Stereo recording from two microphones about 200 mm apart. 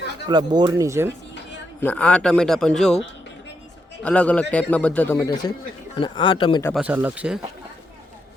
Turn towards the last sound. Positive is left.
turn(degrees=-5)  # may be behind; listen again after turning